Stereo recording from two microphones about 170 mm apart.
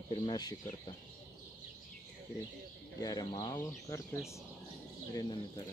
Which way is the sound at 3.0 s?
20° left (ahead or behind).